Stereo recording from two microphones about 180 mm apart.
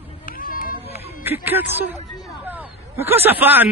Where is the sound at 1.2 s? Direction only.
10° right (ahead or behind).